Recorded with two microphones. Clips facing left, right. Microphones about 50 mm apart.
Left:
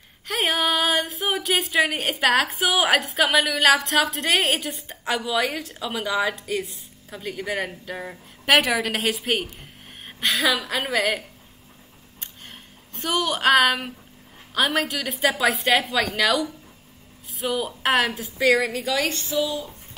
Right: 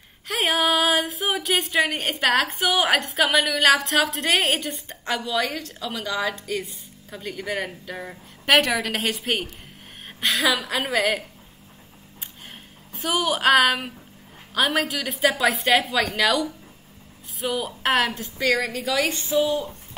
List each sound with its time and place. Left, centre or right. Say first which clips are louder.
0.3 s speech: right 1 dB; centre
12.2 s a sound: even; centre
14.5 s speech: even; centre
19.1 s speech: right 3 dB; right